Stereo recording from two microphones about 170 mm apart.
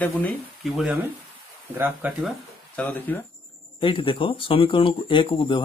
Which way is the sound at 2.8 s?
10° left (ahead or behind).